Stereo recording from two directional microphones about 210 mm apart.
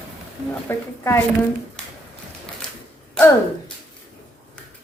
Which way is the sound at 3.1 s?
10° left (ahead or behind).